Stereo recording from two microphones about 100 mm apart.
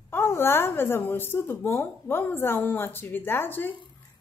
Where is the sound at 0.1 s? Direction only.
25° left (ahead or behind).